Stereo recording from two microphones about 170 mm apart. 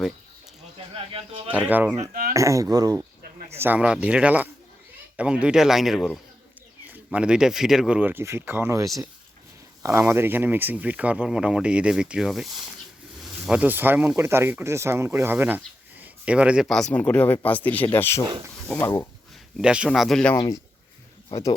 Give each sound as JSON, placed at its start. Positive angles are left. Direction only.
{"t": 1.6, "sound": "speech", "side_deg": -10}
{"t": 6.8, "sound": "speech", "side_deg": -10}
{"t": 19.5, "sound": "speech", "side_deg": -5}
{"t": 20.3, "sound": "speech", "side_deg": 20}